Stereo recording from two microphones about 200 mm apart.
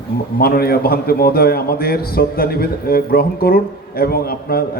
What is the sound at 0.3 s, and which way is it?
A man's voice, 50° left (ahead or behind).